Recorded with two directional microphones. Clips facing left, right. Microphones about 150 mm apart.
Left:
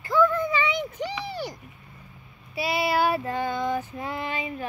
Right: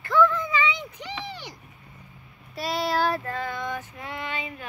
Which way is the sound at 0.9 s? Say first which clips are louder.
Left 5 dB; 40° left (ahead or behind).